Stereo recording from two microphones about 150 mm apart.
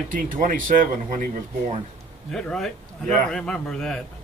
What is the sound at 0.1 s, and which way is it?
Speech, 65° right (ahead or behind).